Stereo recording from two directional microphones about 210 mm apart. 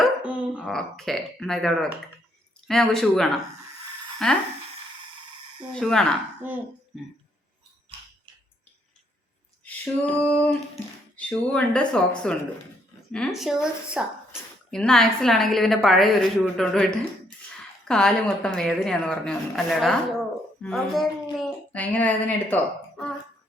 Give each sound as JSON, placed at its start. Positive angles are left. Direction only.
{"t": 0.0, "sound": "a sound", "side_deg": -5}
{"t": 0.6, "sound": "a woman's voice", "side_deg": 5}
{"t": 5.7, "sound": "a woman's voice", "side_deg": 5}
{"t": 6.4, "sound": "speech", "side_deg": -10}
{"t": 7.9, "sound": "a sound", "side_deg": -25}
{"t": 9.6, "sound": "female singing", "side_deg": 5}
{"t": 11.2, "sound": "a woman's voice", "side_deg": 5}